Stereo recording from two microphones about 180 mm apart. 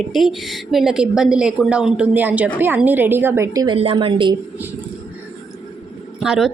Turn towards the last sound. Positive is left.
turn(degrees=0)  # may be behind; listen again after turning